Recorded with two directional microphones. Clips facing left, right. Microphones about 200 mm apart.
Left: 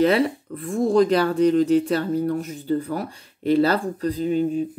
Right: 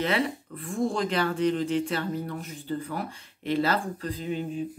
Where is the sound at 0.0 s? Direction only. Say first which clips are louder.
Left 8 dB; 40° left (ahead or behind).